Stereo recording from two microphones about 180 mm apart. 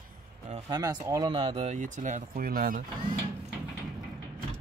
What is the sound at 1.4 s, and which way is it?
Speech, 35° right (ahead or behind).